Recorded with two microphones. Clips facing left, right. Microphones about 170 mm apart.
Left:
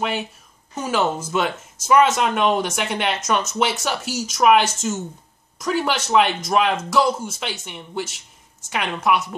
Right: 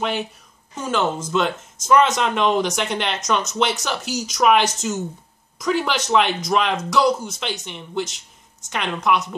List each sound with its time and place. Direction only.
0.7 s a woman's voice: 10° left (ahead or behind)